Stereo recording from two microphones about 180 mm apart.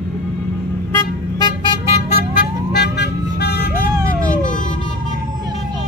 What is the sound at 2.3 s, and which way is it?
Vehicle, 65° left (ahead or behind).